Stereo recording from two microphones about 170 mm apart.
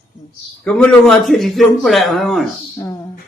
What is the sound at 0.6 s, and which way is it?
A man's voice, 5° left (ahead or behind).